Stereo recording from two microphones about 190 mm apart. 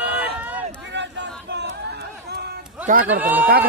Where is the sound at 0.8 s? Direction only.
65° right (ahead or behind).